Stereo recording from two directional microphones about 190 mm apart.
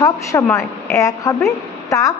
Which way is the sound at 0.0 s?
15° left (ahead or behind).